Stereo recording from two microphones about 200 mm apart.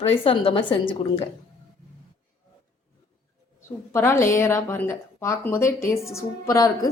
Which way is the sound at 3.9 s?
15° left (ahead or behind).